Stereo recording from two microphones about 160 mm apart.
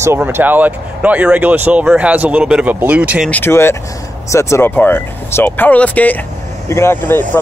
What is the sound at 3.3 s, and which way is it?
Speech, 15° left (ahead or behind).